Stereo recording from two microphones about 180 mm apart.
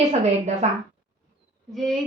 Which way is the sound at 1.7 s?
Centre (ahead or behind).